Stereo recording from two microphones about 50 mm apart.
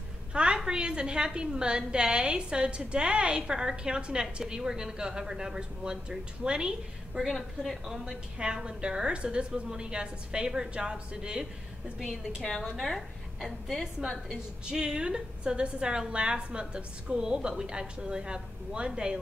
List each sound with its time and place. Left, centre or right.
0.3 s a sound: centre
0.7 s a woman's voice: centre
7.2 s a woman's voice: centre
8.4 s a woman's voice: centre
12.0 s a woman's voice: centre